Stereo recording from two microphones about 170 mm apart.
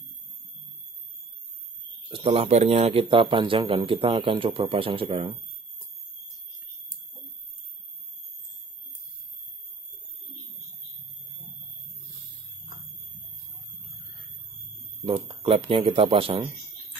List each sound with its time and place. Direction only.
2.0 s speech: 35° right (ahead or behind)
15.0 s speech: 30° right (ahead or behind)